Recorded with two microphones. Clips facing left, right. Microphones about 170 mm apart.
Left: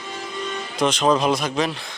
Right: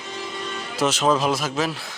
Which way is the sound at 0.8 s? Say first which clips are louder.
Left 1 dB; 5° right (ahead or behind).